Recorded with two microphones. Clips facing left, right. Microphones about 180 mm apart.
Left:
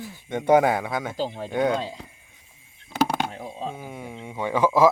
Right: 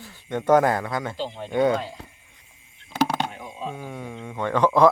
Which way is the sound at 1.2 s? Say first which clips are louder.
Left 3 dB; 40° left (ahead or behind).